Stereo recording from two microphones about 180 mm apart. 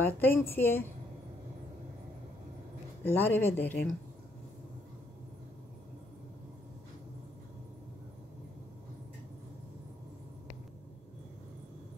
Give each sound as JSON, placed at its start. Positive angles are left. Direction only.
{"t": 0.0, "sound": "speech", "side_deg": 10}
{"t": 3.0, "sound": "speech", "side_deg": 10}